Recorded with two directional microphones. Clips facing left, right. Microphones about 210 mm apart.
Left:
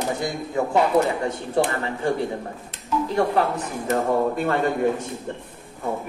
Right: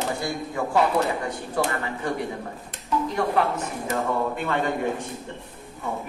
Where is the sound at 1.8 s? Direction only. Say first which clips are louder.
Left 4 dB; 30° left (ahead or behind).